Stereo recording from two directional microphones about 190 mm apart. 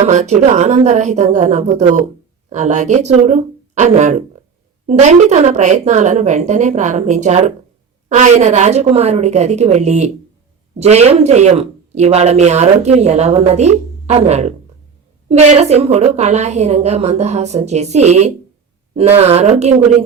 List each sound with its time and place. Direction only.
0.0 s speech: 40° right (ahead or behind)